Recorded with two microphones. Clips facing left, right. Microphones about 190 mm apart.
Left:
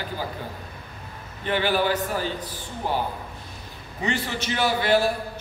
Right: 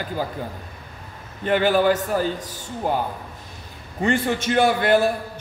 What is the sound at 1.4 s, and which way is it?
Speech, 45° right (ahead or behind).